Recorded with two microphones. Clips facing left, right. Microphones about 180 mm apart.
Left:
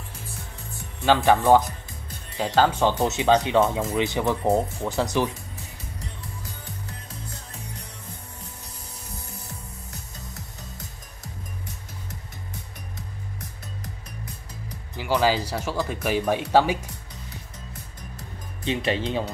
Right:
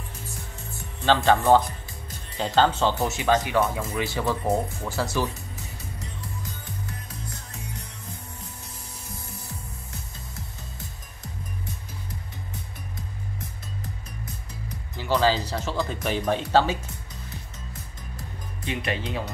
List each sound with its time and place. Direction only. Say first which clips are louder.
1.0 s speech: left 1 dB; 10° left (ahead or behind)
15.0 s speech: even; 10° left (ahead or behind)
18.6 s speech: left 4 dB; 25° left (ahead or behind)